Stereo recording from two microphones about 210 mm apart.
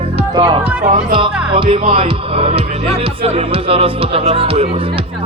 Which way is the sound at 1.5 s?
25° right (ahead or behind).